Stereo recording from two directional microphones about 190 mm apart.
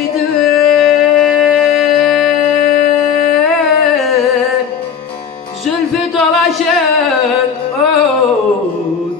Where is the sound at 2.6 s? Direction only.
55° left (ahead or behind).